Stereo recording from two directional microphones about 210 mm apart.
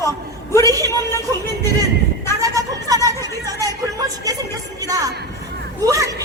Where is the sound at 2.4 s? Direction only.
15° right (ahead or behind).